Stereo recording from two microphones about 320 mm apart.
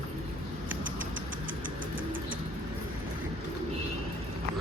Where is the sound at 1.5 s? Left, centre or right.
Right.